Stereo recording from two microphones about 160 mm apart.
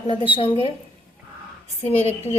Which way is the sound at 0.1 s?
35° left (ahead or behind).